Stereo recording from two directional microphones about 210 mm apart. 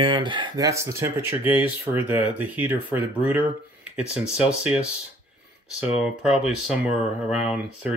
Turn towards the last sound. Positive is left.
turn(degrees=-5)  # may be behind; listen again after turning